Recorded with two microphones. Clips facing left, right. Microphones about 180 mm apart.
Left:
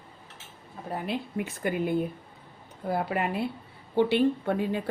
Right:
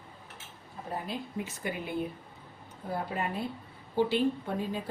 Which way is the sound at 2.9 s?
70° left (ahead or behind).